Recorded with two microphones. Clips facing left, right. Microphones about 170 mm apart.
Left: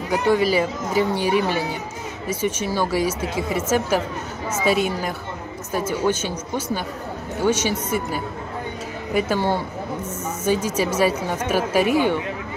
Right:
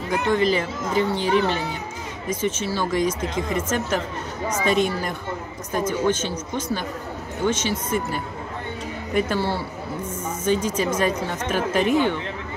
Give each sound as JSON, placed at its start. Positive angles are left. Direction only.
{"t": 0.1, "sound": "a woman's voice", "side_deg": 10}
{"t": 9.4, "sound": "a woman's voice", "side_deg": 15}